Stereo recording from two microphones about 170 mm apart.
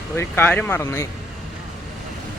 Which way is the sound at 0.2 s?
10° left (ahead or behind).